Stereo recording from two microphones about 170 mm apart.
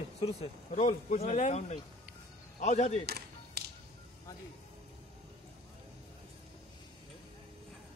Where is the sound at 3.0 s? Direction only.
70° right (ahead or behind).